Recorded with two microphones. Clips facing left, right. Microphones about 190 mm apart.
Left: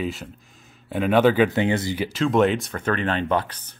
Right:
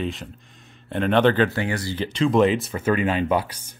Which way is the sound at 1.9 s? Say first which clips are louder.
Right 5 dB; 5° left (ahead or behind).